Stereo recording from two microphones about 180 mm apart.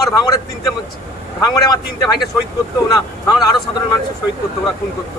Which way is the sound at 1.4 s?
20° left (ahead or behind).